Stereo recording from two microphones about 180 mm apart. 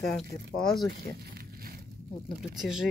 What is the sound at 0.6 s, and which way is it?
Speech, 5° left (ahead or behind).